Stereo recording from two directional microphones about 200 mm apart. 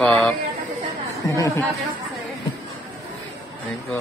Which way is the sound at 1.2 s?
15° left (ahead or behind).